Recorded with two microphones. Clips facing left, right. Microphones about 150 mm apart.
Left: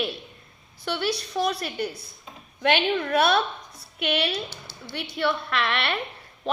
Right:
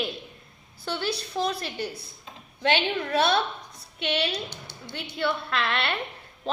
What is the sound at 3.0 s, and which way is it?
A woman's voice, 25° right (ahead or behind).